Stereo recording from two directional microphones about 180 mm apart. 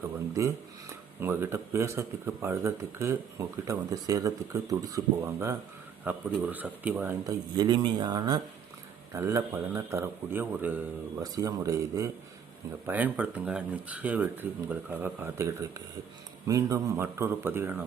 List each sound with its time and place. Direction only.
0.3 s speech: 15° right (ahead or behind)
7.5 s speech: 25° right (ahead or behind)